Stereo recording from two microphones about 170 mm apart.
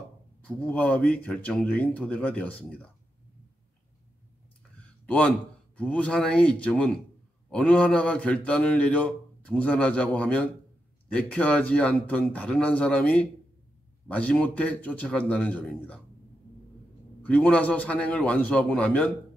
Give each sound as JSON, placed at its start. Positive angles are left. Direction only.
{"t": 0.5, "sound": "a man's voice", "side_deg": 10}
{"t": 5.0, "sound": "a man's voice", "side_deg": 10}
{"t": 17.3, "sound": "a man's voice", "side_deg": 10}